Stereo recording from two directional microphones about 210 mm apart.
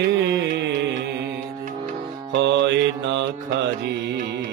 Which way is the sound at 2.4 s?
55° right (ahead or behind).